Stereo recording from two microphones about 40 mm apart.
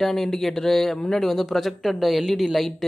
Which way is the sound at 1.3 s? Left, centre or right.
Centre.